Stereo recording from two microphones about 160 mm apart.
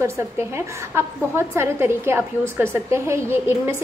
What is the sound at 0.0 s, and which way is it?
A woman's voice, 15° right (ahead or behind).